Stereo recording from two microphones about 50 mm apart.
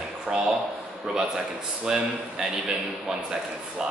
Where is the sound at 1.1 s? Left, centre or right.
Centre.